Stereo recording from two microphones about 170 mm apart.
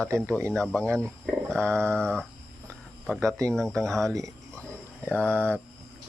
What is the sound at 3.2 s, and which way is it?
Speech, 15° right (ahead or behind).